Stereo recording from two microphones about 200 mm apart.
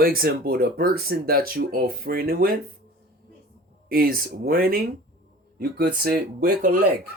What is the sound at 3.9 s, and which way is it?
Speech, 45° right (ahead or behind).